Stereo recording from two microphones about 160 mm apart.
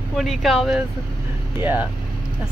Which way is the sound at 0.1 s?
Centre (ahead or behind).